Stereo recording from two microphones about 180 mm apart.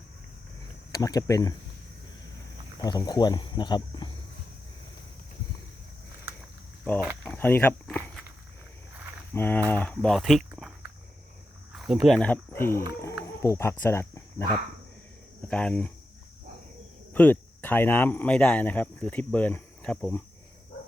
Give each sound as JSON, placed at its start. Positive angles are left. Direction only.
{"t": 0.9, "sound": "speech", "side_deg": 20}
{"t": 2.8, "sound": "speech", "side_deg": 20}
{"t": 7.3, "sound": "a sound", "side_deg": 10}
{"t": 9.3, "sound": "speech", "side_deg": 10}
{"t": 11.7, "sound": "speech", "side_deg": 0}
{"t": 13.8, "sound": "cricket", "side_deg": 15}
{"t": 15.4, "sound": "speech", "side_deg": 5}
{"t": 17.2, "sound": "speech", "side_deg": 10}